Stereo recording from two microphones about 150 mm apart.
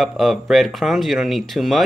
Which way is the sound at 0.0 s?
Centre (ahead or behind).